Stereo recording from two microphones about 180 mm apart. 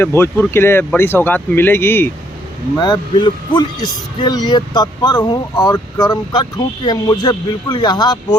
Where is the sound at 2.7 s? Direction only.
25° left (ahead or behind).